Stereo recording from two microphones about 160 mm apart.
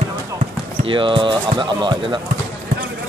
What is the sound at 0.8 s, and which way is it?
Speech, 30° right (ahead or behind).